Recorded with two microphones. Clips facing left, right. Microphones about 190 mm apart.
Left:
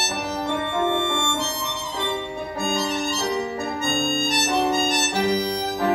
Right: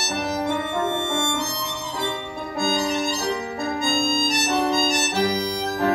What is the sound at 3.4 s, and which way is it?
Music, 30° left (ahead or behind).